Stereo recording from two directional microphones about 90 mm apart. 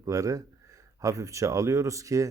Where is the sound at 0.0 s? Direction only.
35° right (ahead or behind).